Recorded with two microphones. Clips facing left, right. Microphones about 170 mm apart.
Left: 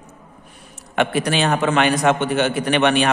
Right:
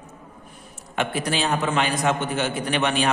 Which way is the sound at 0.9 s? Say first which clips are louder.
Left 6 dB; 70° left (ahead or behind).